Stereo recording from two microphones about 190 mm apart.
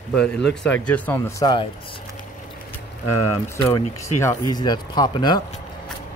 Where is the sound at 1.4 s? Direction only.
25° left (ahead or behind).